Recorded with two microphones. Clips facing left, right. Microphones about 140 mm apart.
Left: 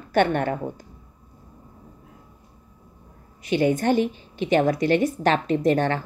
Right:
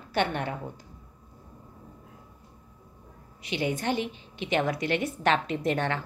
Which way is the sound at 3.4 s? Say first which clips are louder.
Left 9 dB; 45° left (ahead or behind).